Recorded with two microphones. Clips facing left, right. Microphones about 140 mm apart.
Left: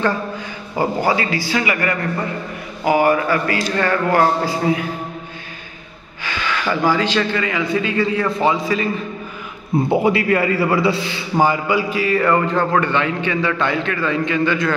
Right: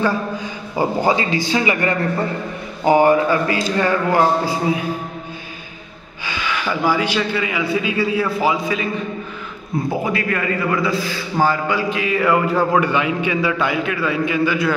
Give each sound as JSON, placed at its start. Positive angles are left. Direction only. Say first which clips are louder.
{"t": 0.7, "sound": "speech", "louder": "right 1 dB", "side_deg": -20}
{"t": 6.2, "sound": "a man's voice", "louder": "left 1 dB", "side_deg": -15}
{"t": 9.8, "sound": "a man's voice", "louder": "left 5 dB", "side_deg": 25}
{"t": 11.3, "sound": "a man's voice", "louder": "left 2 dB", "side_deg": 10}